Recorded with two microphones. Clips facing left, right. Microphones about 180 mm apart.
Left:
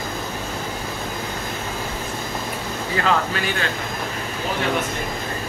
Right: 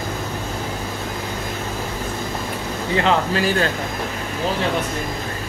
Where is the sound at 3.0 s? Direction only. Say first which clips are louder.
Right 3 dB; 30° right (ahead or behind).